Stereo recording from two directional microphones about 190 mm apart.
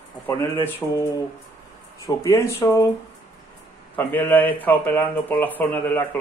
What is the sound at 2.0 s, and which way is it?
Speech, 15° left (ahead or behind).